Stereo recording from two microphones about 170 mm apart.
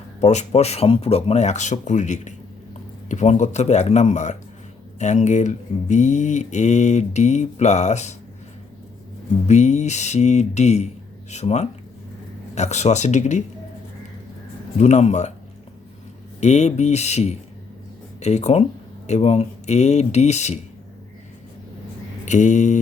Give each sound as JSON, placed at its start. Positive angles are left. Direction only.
{"t": 0.2, "sound": "speech", "side_deg": 40}
{"t": 9.5, "sound": "speech", "side_deg": 45}
{"t": 14.8, "sound": "speech", "side_deg": 45}
{"t": 16.4, "sound": "speech", "side_deg": 40}
{"t": 22.3, "sound": "speech", "side_deg": 45}